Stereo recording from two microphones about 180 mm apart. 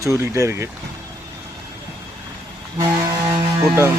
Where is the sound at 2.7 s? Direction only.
15° right (ahead or behind).